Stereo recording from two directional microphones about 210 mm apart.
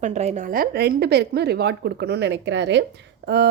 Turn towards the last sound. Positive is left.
turn(degrees=-55)  # may be behind; listen again after turning